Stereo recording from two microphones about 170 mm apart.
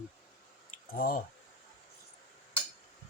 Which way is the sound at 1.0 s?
55° left (ahead or behind).